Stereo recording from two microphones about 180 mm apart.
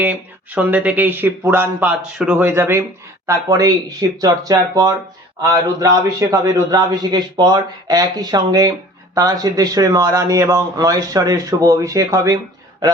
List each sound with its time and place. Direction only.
0.0 s a man's voice: 10° right (ahead or behind)